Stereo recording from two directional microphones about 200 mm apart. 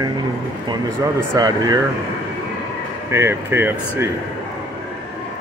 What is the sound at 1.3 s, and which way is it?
Speech, 20° right (ahead or behind).